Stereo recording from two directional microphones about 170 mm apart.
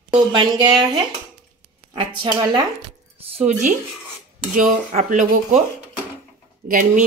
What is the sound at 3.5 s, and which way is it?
Speech, 45° right (ahead or behind).